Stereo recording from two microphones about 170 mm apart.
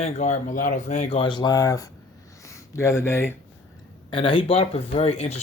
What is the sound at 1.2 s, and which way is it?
Speech, 25° left (ahead or behind).